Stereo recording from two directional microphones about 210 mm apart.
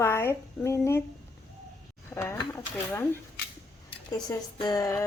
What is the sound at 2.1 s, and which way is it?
Speech, 10° left (ahead or behind).